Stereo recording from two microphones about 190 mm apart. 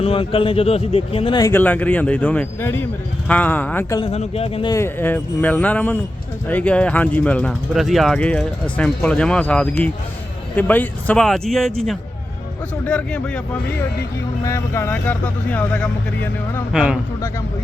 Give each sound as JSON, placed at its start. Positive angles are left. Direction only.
{"t": 0.0, "sound": "a man's voice", "side_deg": 30}
{"t": 4.0, "sound": "speech", "side_deg": 35}
{"t": 4.7, "sound": "a man's voice", "side_deg": 10}
{"t": 16.7, "sound": "speech", "side_deg": -5}